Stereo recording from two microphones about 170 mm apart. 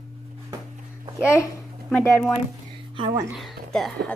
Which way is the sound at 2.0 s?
5° left (ahead or behind).